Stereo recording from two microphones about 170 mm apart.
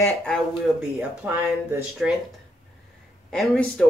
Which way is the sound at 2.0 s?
Centre (ahead or behind).